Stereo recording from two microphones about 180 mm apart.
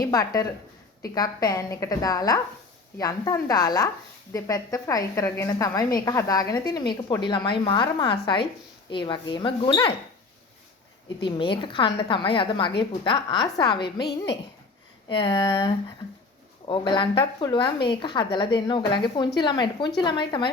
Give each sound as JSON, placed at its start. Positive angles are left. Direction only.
{"t": 0.0, "sound": "a woman's voice", "side_deg": 20}
{"t": 11.3, "sound": "a woman's voice", "side_deg": 30}
{"t": 15.1, "sound": "a woman's voice", "side_deg": 25}